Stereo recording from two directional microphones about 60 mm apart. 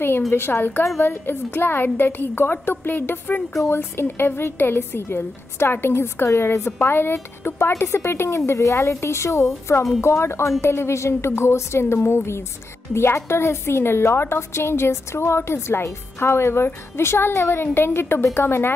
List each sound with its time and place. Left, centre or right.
0.3 s a woman's voice: left